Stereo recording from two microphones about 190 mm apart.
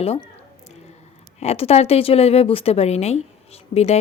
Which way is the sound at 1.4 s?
35° left (ahead or behind).